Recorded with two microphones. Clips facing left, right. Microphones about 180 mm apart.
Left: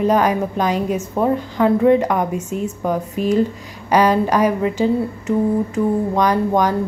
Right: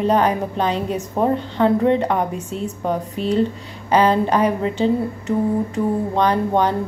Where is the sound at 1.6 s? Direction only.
30° right (ahead or behind).